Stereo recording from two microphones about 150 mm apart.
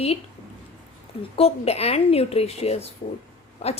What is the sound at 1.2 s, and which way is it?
A woman's voice, 40° left (ahead or behind).